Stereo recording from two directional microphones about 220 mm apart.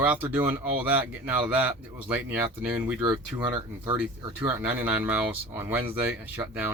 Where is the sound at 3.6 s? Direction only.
20° right (ahead or behind).